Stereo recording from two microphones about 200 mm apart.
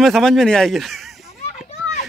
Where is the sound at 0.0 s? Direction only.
Centre (ahead or behind).